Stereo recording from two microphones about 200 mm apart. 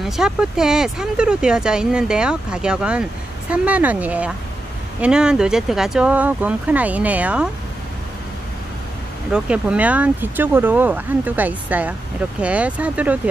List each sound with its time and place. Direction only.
0.0 s speech: centre (ahead or behind)
9.3 s speech: 5° right (ahead or behind)